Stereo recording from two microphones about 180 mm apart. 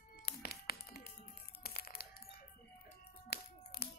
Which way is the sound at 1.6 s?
60° left (ahead or behind).